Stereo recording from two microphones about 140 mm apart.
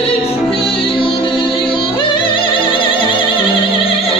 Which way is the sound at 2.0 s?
35° left (ahead or behind).